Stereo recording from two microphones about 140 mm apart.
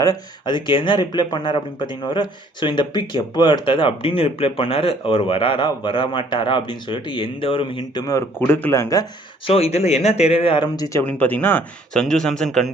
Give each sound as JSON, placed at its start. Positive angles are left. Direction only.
{"t": 0.0, "sound": "speech", "side_deg": 30}
{"t": 8.4, "sound": "speech", "side_deg": 15}
{"t": 9.5, "sound": "speech", "side_deg": 45}
{"t": 10.8, "sound": "speech", "side_deg": 20}
{"t": 11.0, "sound": "speech", "side_deg": 10}